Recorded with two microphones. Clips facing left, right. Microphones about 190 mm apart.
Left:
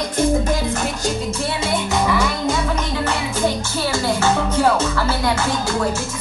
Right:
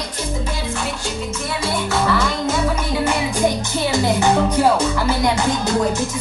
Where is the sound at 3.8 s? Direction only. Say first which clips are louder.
Right 2 dB; 20° right (ahead or behind).